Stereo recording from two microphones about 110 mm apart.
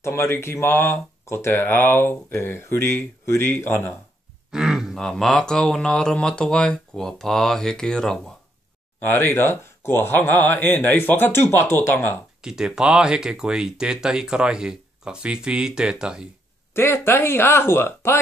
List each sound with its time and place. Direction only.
0.0 s speech: 25° left (ahead or behind)
4.5 s a sound: 5° right (ahead or behind)
4.9 s speech: 5° left (ahead or behind)
9.0 s speech: 20° left (ahead or behind)
12.4 s speech: 5° right (ahead or behind)
16.7 s speech: 20° left (ahead or behind)